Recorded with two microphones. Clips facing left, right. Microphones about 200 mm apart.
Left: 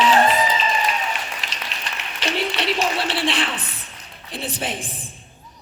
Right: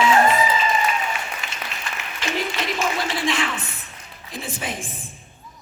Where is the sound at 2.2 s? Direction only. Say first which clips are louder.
Left 2 dB; 80° left.